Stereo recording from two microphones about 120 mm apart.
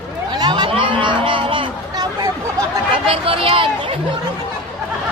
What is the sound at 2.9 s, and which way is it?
Speech, 50° right (ahead or behind).